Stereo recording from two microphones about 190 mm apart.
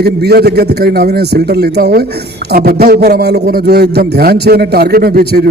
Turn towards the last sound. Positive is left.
turn(degrees=-55)  # may be behind; listen again after turning